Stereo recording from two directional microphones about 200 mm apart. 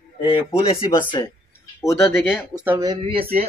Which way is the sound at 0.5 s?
30° left (ahead or behind).